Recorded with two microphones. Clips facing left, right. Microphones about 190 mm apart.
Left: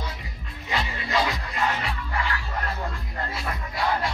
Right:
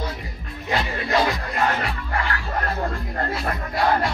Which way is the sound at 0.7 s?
55° right (ahead or behind).